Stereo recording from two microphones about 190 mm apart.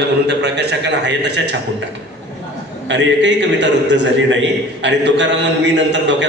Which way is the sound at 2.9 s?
65° right (ahead or behind).